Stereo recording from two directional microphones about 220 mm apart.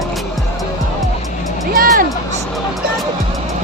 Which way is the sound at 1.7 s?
40° right (ahead or behind).